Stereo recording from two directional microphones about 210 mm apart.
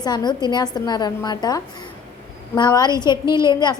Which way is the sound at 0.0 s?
20° left (ahead or behind).